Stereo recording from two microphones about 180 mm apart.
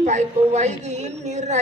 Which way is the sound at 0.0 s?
40° right (ahead or behind).